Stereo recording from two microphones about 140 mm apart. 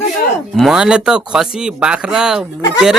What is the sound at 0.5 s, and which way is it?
Speech, centre (ahead or behind).